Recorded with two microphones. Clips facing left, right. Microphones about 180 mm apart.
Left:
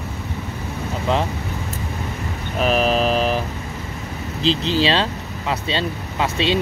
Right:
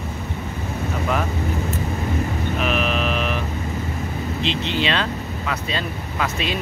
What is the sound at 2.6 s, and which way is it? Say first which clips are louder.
Mantra: left 6 dB; 35° left (ahead or behind).